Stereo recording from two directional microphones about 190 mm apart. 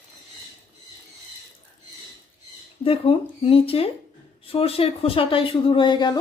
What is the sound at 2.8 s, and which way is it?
Speech, 30° left (ahead or behind).